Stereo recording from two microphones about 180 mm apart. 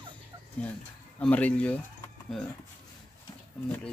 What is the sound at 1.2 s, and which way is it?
Speech, 5° left (ahead or behind).